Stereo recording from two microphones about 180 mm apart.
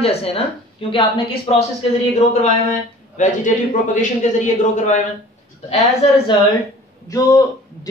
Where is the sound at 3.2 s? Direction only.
45° left (ahead or behind).